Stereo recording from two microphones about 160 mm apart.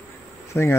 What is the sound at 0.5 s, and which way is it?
Speech, 15° left (ahead or behind).